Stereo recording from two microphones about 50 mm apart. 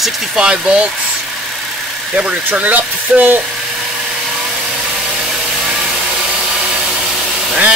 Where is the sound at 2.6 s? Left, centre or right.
Right.